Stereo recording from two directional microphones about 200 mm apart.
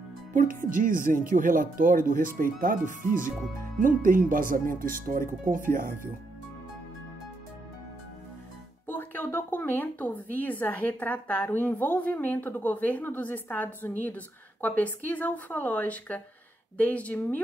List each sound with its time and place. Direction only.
0.3 s speech: 45° right (ahead or behind)
8.8 s a sound: 10° left (ahead or behind)
10.3 s a woman's voice: 10° left (ahead or behind)